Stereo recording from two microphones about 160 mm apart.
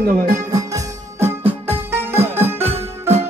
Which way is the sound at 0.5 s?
20° right (ahead or behind).